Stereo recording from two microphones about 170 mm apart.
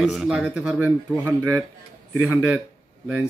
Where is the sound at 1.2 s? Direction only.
15° right (ahead or behind).